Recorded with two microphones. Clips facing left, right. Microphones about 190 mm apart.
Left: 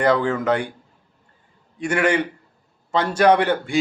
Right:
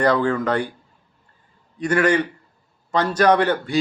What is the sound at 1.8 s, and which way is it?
Speech, 10° left (ahead or behind).